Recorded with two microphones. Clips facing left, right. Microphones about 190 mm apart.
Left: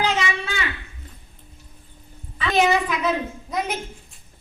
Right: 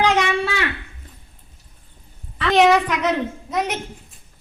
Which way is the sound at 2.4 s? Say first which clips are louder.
Right 4 dB; 75° right (ahead or behind).